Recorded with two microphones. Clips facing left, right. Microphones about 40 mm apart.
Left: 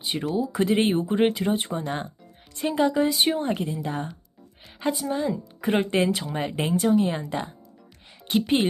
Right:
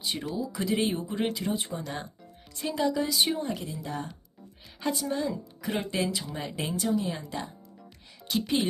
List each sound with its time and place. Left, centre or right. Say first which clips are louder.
0.0 s speech: left 4 dB; left
0.5 s speech: left 6 dB; left
4.8 s a woman's voice: left 4 dB; centre
5.5 s speech: left 9 dB; left